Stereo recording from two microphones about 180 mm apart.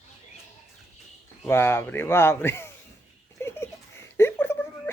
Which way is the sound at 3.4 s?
15° left (ahead or behind).